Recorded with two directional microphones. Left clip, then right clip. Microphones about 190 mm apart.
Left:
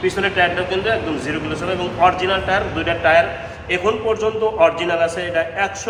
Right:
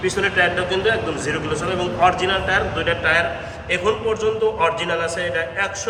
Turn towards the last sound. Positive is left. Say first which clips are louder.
# left 2 dB
turn(degrees=10)  # may be behind; listen again after turning